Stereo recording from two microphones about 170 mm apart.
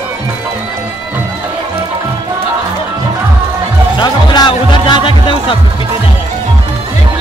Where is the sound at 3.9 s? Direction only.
25° left (ahead or behind).